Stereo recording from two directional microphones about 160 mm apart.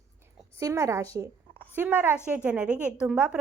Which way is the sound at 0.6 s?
20° right (ahead or behind).